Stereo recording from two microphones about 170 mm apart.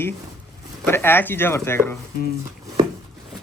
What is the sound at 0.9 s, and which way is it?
Speech, 15° left (ahead or behind).